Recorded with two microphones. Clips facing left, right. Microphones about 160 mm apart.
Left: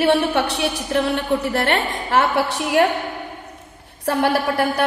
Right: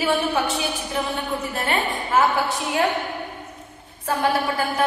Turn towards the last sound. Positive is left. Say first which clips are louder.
# left 3 dB
turn(degrees=70)  # may be behind; listen again after turning